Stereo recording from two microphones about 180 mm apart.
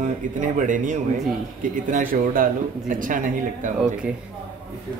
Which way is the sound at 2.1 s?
50° right (ahead or behind).